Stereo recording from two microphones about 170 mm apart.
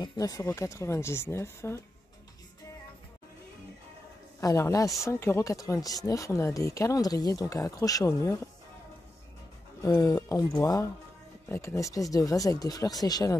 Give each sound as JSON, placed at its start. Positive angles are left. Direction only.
{"t": 0.0, "sound": "speech", "side_deg": 20}
{"t": 4.4, "sound": "speech", "side_deg": 20}
{"t": 9.8, "sound": "speech", "side_deg": 20}